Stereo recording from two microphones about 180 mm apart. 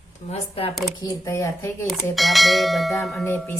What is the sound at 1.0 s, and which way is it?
Speech, 15° left (ahead or behind).